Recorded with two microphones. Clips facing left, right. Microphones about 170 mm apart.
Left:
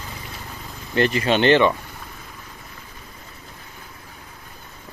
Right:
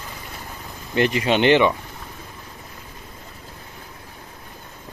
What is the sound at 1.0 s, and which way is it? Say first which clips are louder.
Speech: even; 15° right (ahead or behind).